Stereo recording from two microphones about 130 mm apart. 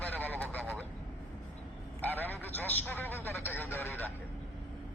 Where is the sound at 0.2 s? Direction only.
15° left (ahead or behind).